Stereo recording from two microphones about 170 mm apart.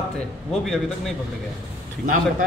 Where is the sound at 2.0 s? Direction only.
50° right (ahead or behind).